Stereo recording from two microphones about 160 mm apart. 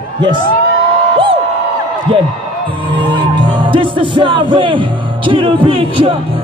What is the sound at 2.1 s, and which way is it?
Speech, 30° right (ahead or behind).